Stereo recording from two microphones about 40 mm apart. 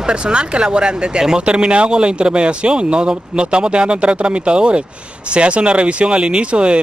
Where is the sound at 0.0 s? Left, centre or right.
Right.